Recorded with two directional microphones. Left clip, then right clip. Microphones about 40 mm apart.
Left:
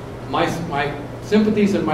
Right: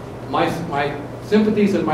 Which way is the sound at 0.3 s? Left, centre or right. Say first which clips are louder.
Right 1 dB; centre.